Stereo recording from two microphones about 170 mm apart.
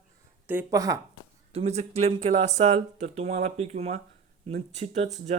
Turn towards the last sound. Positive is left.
turn(degrees=-40)  # may be behind; listen again after turning